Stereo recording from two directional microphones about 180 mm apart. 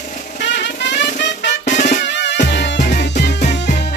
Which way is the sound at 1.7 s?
40° left (ahead or behind).